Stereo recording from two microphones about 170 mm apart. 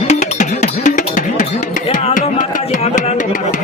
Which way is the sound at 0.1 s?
45° left (ahead or behind).